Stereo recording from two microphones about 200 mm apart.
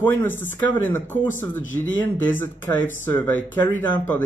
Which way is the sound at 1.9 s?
10° left (ahead or behind).